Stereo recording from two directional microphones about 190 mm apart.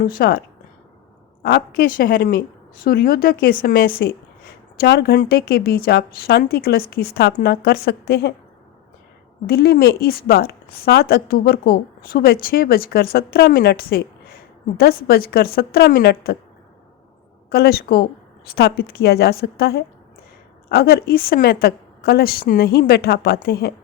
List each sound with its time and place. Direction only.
0.0 s a woman's voice: 50° left (ahead or behind)
9.5 s a woman's voice: 55° left (ahead or behind)
17.5 s a woman's voice: 55° left (ahead or behind)